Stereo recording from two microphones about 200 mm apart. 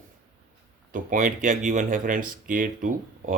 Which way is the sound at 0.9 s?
40° right (ahead or behind).